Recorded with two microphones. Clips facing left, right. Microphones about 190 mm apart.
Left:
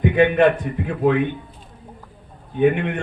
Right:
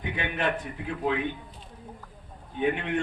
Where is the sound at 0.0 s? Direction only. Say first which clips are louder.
Left 15 dB; 60° left (ahead or behind).